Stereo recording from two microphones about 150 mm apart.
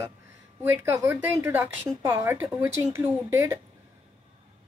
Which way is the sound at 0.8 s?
15° right (ahead or behind).